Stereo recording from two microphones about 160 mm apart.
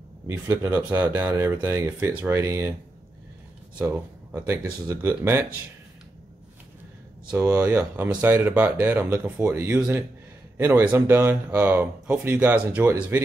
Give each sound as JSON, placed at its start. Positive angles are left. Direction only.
{"t": 0.3, "sound": "speech", "side_deg": -15}
{"t": 3.7, "sound": "speech", "side_deg": -10}
{"t": 7.2, "sound": "speech", "side_deg": -10}